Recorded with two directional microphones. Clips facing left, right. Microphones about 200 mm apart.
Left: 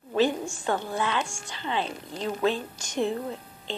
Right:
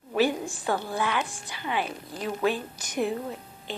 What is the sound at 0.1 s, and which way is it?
A woman's voice, 10° right (ahead or behind).